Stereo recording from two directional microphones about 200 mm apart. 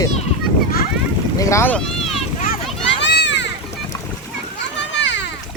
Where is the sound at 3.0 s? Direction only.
60° left (ahead or behind).